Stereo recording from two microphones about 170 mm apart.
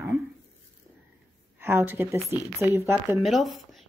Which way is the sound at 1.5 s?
10° right (ahead or behind).